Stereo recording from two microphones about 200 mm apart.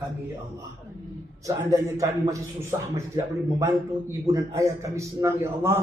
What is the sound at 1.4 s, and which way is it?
Speech, 15° right (ahead or behind).